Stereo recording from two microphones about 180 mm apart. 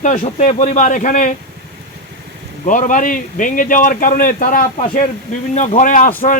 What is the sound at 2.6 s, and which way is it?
Speech, 45° left (ahead or behind).